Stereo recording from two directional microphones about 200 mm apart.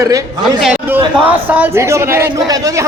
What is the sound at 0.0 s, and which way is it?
Speech, 15° right (ahead or behind).